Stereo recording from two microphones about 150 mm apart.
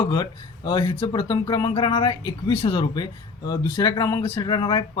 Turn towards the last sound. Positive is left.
turn(degrees=30)  # may be behind; listen again after turning